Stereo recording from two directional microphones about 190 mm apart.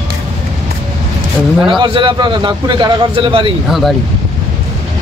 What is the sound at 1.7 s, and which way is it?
A man's voice, 25° right (ahead or behind).